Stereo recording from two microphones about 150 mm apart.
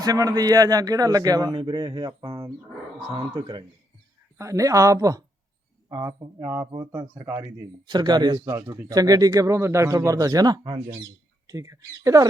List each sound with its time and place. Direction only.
0.0 s speech: 25° right (ahead or behind)
4.4 s speech: 20° right (ahead or behind)